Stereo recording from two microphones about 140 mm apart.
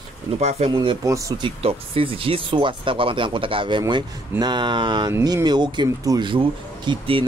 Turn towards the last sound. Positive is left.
turn(degrees=-35)  # may be behind; listen again after turning